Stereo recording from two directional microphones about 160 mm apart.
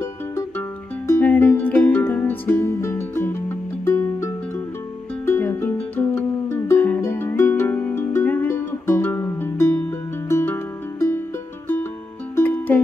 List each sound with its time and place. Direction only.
0.0 s music: 15° left (ahead or behind)